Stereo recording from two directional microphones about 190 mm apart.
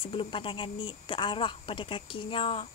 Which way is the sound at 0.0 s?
25° left (ahead or behind).